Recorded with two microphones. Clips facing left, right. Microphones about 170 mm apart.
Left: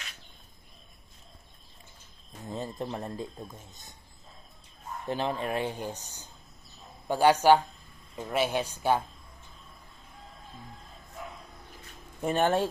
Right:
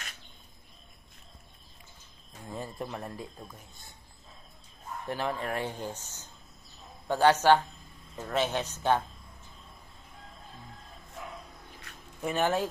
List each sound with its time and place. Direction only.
2.5 s speech: 25° left (ahead or behind)
5.0 s speech: 20° left (ahead or behind)
12.2 s speech: 30° left (ahead or behind)